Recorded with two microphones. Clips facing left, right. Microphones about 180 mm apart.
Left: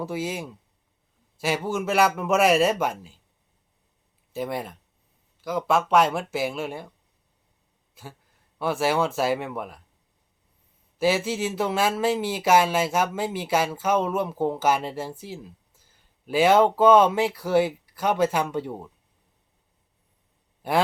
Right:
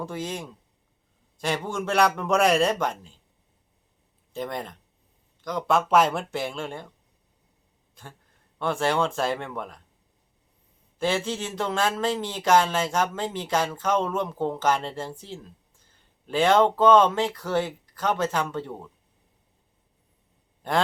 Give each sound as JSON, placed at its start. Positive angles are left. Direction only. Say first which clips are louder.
{"t": 0.0, "sound": "a man's voice", "louder": "left 3 dB", "side_deg": 10}
{"t": 4.3, "sound": "a man's voice", "louder": "left 2 dB", "side_deg": 5}
{"t": 8.0, "sound": "a man's voice", "louder": "left 3 dB", "side_deg": 5}
{"t": 10.9, "sound": "speech", "louder": "left 3 dB", "side_deg": 5}
{"t": 20.6, "sound": "sigh", "louder": "left 2 dB", "side_deg": 10}